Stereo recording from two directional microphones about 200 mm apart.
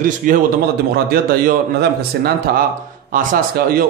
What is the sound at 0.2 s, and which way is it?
A man's voice, 40° right (ahead or behind).